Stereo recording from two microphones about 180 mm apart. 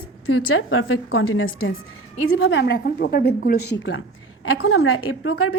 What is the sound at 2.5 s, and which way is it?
A woman's voice, 75° left (ahead or behind).